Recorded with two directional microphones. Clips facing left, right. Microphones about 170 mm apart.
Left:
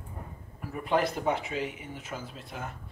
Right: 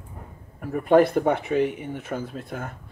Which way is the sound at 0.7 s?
50° right (ahead or behind).